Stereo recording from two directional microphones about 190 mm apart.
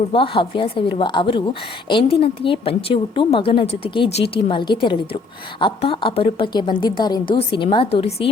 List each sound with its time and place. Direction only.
0.1 s a woman's voice: 30° left (ahead or behind)